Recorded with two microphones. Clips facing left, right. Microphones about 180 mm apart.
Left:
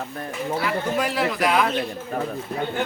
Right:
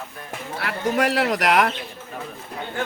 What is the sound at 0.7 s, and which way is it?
Speech, 70° right (ahead or behind).